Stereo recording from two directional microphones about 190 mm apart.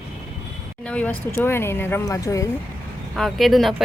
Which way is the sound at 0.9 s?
5° left (ahead or behind).